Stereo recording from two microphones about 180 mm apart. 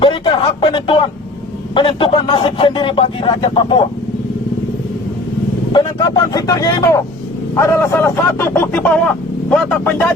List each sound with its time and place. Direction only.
0.0 s a sound: 30° left (ahead or behind)
1.7 s speech: 30° left (ahead or behind)
5.7 s speech: 25° left (ahead or behind); by 10.1 s 10° left (ahead or behind)